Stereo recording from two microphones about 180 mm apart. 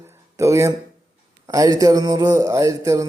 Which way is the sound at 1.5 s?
20° right (ahead or behind).